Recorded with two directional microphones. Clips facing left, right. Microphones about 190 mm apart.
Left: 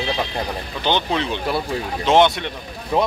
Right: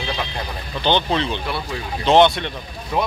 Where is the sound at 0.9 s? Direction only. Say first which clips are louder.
Right 1 dB; 10° left (ahead or behind).